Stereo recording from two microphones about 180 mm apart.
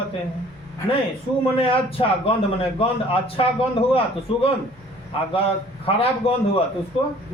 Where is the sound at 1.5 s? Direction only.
30° left (ahead or behind).